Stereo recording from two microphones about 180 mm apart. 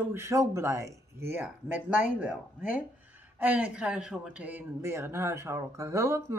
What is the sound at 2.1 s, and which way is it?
Speech, 5° right (ahead or behind).